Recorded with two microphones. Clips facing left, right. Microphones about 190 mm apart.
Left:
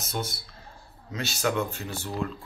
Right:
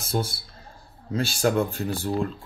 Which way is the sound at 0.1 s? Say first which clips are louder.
Right 6 dB; 30° right (ahead or behind).